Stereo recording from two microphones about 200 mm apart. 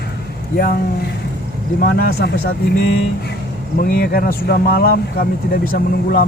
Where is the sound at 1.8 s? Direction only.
50° left (ahead or behind).